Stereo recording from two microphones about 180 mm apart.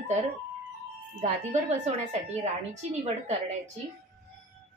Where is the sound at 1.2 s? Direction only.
40° right (ahead or behind).